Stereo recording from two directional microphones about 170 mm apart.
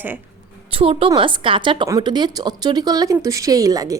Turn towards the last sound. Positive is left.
turn(degrees=-20)  # may be behind; listen again after turning